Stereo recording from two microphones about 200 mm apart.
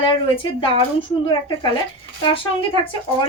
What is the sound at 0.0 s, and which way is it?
Speech, 25° left (ahead or behind).